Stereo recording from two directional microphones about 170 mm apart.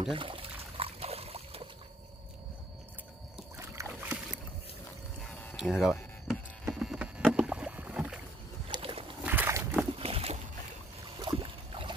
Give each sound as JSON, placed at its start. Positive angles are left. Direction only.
{"t": 0.0, "sound": "pour", "side_deg": -30}
{"t": 3.5, "sound": "rowboat", "side_deg": -15}
{"t": 5.6, "sound": "a sound", "side_deg": -5}
{"t": 6.7, "sound": "rowboat", "side_deg": -5}
{"t": 8.6, "sound": "boat", "side_deg": -35}
{"t": 9.2, "sound": "a sound", "side_deg": -10}
{"t": 9.9, "sound": "boat", "side_deg": -35}